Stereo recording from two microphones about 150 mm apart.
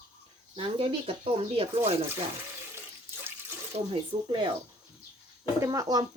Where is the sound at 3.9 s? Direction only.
30° right (ahead or behind).